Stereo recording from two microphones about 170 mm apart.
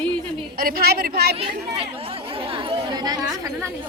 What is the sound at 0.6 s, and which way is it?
Speech, 60° right (ahead or behind).